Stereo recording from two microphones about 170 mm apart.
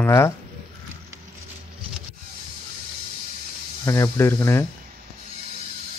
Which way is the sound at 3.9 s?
15° left (ahead or behind).